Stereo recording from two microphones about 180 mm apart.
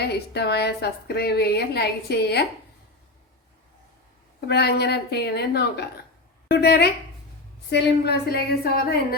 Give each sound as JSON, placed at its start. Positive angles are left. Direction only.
{"t": 0.1, "sound": "a woman's voice", "side_deg": 65}
{"t": 4.4, "sound": "a woman's voice", "side_deg": 65}